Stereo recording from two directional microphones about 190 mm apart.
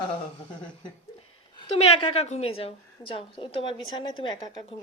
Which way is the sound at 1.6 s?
30° left (ahead or behind).